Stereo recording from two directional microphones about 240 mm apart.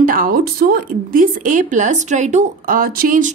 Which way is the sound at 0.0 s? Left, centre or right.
Right.